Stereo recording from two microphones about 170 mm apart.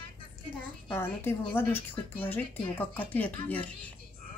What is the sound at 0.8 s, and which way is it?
Speech, 15° left (ahead or behind).